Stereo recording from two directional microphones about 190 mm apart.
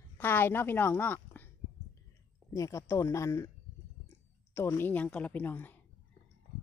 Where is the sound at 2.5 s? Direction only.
15° left (ahead or behind).